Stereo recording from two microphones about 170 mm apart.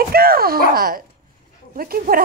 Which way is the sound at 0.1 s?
60° right (ahead or behind).